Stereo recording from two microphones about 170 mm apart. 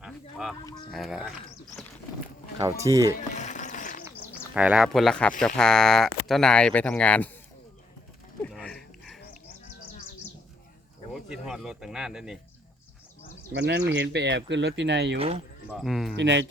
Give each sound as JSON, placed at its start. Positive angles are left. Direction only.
{"t": 0.0, "sound": "goose", "side_deg": 0}
{"t": 0.9, "sound": "speech", "side_deg": 0}
{"t": 2.6, "sound": "speech", "side_deg": -20}
{"t": 3.2, "sound": "a sound", "side_deg": 45}
{"t": 4.5, "sound": "speech", "side_deg": -5}
{"t": 8.4, "sound": "a sound", "side_deg": 5}
{"t": 11.1, "sound": "speech", "side_deg": -5}
{"t": 13.5, "sound": "speech", "side_deg": -90}
{"t": 15.7, "sound": "speech", "side_deg": 0}
{"t": 16.1, "sound": "speech", "side_deg": -90}